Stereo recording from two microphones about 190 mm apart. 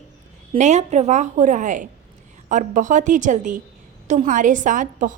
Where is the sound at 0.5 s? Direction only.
35° right (ahead or behind).